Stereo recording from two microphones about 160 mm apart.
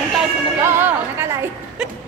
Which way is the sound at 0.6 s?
15° right (ahead or behind).